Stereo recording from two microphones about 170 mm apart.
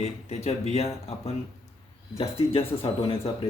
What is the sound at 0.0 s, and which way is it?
Speech, 40° left (ahead or behind).